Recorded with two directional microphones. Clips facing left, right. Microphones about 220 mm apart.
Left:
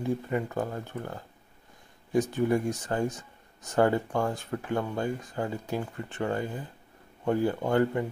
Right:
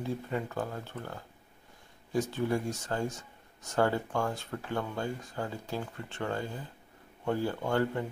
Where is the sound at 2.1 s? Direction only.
15° left (ahead or behind).